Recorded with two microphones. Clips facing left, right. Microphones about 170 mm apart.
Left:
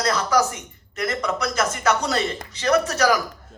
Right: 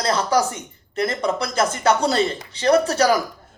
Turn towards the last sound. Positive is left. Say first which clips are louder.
# right 3 dB
turn(degrees=-30)  # may be behind; listen again after turning